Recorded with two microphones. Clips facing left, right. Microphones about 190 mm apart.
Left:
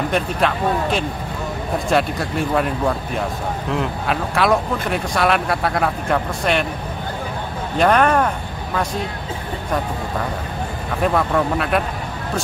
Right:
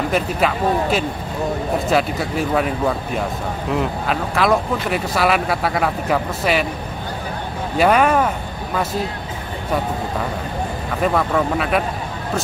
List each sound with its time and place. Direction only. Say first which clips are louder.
0.1 s speech: right 1 dB; 5° right (ahead or behind)
7.7 s speech: even; 5° right (ahead or behind)
11.0 s speech: even; centre (ahead or behind)